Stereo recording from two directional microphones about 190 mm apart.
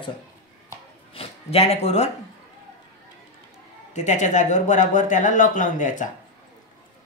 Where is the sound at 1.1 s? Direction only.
30° left (ahead or behind).